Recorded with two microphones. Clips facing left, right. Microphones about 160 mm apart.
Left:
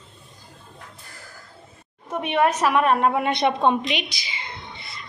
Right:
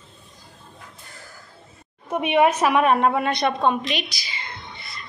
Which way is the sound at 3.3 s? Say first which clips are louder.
Left 1 dB; 25° left (ahead or behind).